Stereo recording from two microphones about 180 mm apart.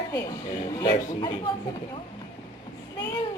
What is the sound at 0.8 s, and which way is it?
Speech, 25° left (ahead or behind).